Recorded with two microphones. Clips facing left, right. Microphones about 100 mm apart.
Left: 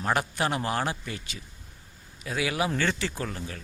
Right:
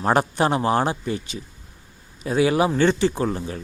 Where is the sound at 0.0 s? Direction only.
35° right (ahead or behind).